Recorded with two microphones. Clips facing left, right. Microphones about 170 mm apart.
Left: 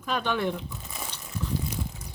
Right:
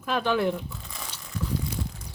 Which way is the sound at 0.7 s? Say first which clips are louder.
Left 1 dB; 20° left (ahead or behind).